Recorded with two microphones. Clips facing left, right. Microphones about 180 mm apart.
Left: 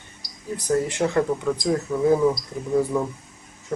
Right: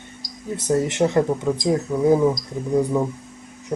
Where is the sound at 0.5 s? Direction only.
20° right (ahead or behind).